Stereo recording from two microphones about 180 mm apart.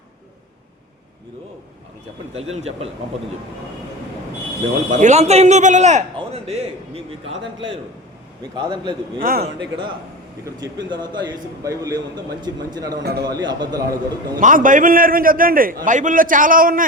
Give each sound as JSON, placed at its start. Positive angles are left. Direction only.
{"t": 2.3, "sound": "a man's voice", "side_deg": -35}
{"t": 4.9, "sound": "a man's voice", "side_deg": -40}
{"t": 9.2, "sound": "a man's voice", "side_deg": -60}
{"t": 10.4, "sound": "a man's voice", "side_deg": -20}
{"t": 13.0, "sound": "a man's voice", "side_deg": -60}
{"t": 13.2, "sound": "a man's voice", "side_deg": -25}
{"t": 14.3, "sound": "a man's voice", "side_deg": -50}